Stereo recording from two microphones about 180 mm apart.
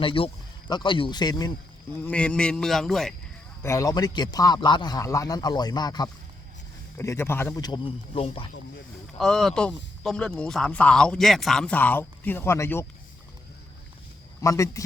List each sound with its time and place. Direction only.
0.0 s a man's voice: 30° left (ahead or behind)
2.0 s speech: 5° left (ahead or behind)
3.6 s a man's voice: 15° left (ahead or behind); by 8.4 s 30° left (ahead or behind)
9.1 s speech: centre (ahead or behind)
14.4 s speech: 15° left (ahead or behind)